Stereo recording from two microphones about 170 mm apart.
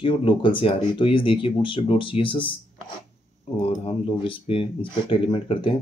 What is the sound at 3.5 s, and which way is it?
Speech, 35° left (ahead or behind).